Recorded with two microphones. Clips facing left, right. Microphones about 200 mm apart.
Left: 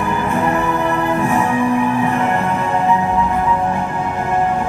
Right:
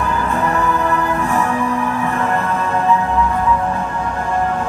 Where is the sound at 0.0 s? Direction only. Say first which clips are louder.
Left 1 dB; 15° left (ahead or behind).